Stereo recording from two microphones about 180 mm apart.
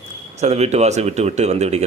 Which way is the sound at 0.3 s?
35° right (ahead or behind).